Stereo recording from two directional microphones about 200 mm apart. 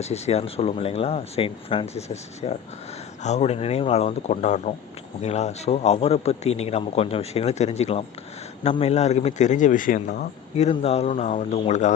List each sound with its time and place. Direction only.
0.0 s a man's voice: 30° left (ahead or behind)